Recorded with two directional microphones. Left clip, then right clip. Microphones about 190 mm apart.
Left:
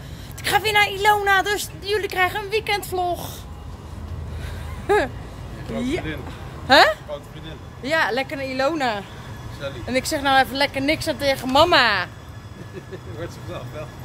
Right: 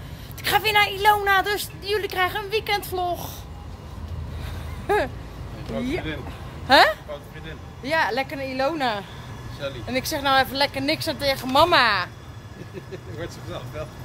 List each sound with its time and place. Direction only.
0.4 s speech: centre (ahead or behind)
4.8 s speech: 5° left (ahead or behind)